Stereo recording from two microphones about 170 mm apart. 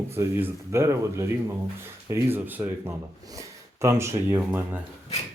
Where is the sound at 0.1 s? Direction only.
15° right (ahead or behind).